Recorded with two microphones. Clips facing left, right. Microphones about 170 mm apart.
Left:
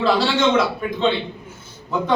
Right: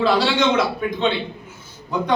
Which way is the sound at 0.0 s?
Centre (ahead or behind).